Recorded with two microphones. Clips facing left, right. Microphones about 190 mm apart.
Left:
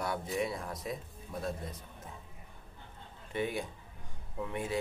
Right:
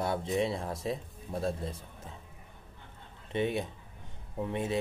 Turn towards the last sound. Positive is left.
turn(degrees=-25)  # may be behind; listen again after turning